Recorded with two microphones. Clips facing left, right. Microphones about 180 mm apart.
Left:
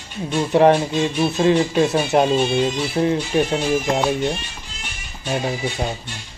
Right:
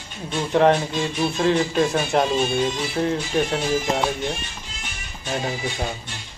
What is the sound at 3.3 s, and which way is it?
Speech, 10° left (ahead or behind).